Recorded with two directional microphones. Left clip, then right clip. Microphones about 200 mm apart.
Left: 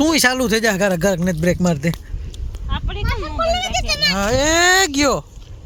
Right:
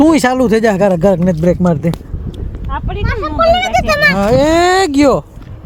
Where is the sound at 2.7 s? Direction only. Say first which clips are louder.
Right 6 dB; 20° left (ahead or behind).